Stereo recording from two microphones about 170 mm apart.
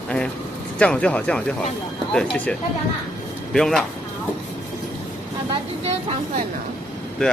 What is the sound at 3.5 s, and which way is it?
Speech, 5° left (ahead or behind).